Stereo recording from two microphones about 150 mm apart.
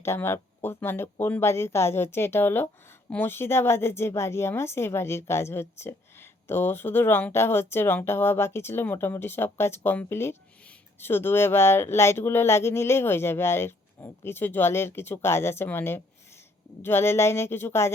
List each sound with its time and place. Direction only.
0.0 s speech: 15° left (ahead or behind)